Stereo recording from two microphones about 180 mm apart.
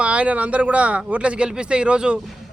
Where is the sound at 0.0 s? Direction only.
5° right (ahead or behind).